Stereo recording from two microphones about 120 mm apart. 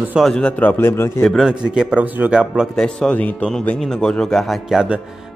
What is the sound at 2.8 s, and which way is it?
Speech, 5° left (ahead or behind).